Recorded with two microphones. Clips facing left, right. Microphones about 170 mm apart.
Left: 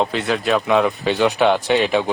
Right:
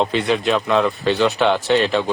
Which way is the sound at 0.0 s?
5° left (ahead or behind).